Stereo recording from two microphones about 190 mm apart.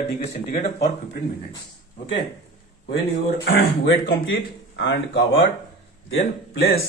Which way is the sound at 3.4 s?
65° left (ahead or behind).